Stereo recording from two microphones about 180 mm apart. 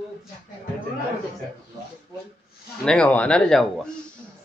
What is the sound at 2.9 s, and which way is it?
Speech, 5° left (ahead or behind).